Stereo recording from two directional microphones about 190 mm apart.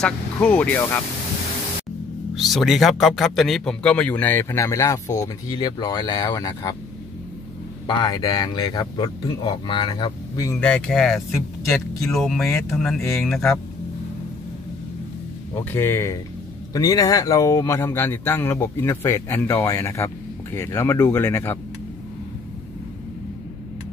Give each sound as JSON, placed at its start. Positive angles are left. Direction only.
{"t": 0.0, "sound": "a man's voice", "side_deg": 5}
{"t": 2.3, "sound": "a man's voice", "side_deg": 0}
{"t": 7.8, "sound": "speech", "side_deg": 25}
{"t": 10.6, "sound": "speech", "side_deg": 5}
{"t": 15.5, "sound": "a man's voice", "side_deg": 10}